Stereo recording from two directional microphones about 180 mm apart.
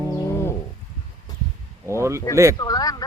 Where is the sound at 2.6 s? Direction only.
20° left (ahead or behind).